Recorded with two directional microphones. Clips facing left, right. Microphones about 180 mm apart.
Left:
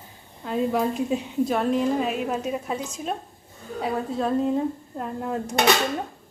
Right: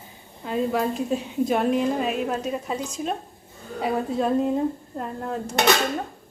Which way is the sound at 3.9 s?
10° right (ahead or behind).